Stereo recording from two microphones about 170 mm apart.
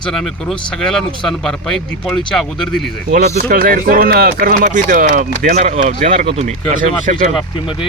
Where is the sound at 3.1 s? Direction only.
70° right (ahead or behind); by 7.3 s 45° right (ahead or behind).